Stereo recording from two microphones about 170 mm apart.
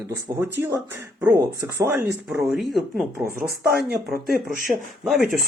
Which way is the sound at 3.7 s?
70° right (ahead or behind).